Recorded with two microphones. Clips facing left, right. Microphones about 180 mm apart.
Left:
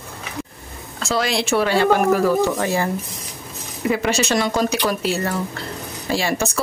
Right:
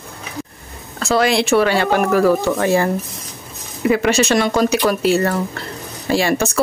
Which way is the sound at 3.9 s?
65° right (ahead or behind).